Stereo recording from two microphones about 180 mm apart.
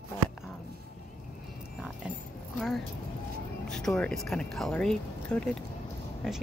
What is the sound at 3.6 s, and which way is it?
Speech, 5° left (ahead or behind).